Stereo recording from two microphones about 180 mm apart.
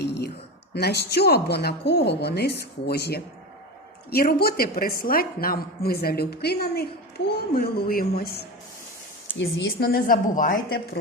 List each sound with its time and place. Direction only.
0.0 s a sound: 70° left (ahead or behind)
0.7 s a woman's voice: 65° left (ahead or behind)
9.4 s a woman's voice: 75° left (ahead or behind); by 10.8 s 50° left (ahead or behind)